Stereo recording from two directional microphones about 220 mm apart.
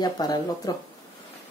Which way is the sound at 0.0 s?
20° left (ahead or behind).